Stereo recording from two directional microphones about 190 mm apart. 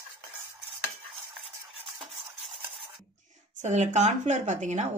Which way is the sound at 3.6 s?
35° right (ahead or behind).